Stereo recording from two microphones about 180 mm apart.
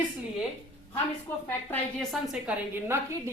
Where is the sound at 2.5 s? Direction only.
5° right (ahead or behind).